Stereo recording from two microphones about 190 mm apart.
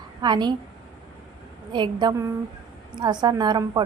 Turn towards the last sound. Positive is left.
turn(degrees=-20)  # may be behind; listen again after turning